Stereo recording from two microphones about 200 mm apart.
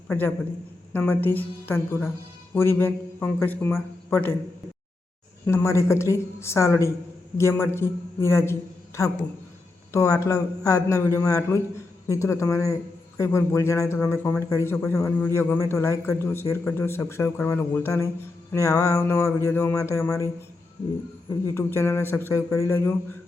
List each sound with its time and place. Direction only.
0.1 s a man's voice: 10° left (ahead or behind)
5.5 s a man's voice: 15° left (ahead or behind)